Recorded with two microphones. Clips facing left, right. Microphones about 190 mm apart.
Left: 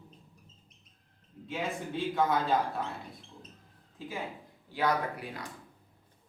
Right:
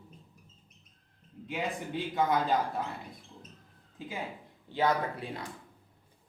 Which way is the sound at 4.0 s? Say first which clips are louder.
Even; 20° right (ahead or behind).